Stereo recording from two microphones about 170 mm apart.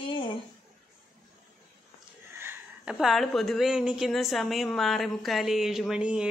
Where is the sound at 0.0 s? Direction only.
30° left (ahead or behind).